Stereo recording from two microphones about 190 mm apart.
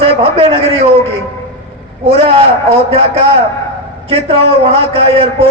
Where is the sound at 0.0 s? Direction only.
30° right (ahead or behind).